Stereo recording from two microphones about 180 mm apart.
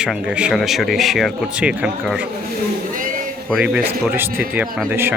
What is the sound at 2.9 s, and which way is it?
Speech, 50° right (ahead or behind).